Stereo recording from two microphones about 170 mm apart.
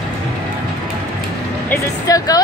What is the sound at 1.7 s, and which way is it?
Speech, 20° left (ahead or behind).